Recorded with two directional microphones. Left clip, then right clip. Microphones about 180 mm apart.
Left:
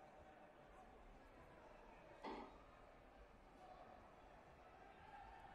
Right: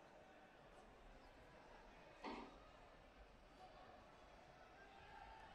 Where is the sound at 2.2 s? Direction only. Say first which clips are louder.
Even; 65° right (ahead or behind).